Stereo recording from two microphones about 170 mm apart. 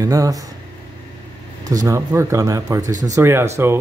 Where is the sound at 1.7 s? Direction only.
20° right (ahead or behind).